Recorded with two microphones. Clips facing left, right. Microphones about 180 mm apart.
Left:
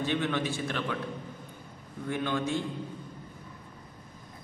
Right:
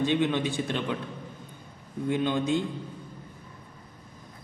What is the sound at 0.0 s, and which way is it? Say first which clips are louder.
Speech: right 4 dB; 20° right (ahead or behind).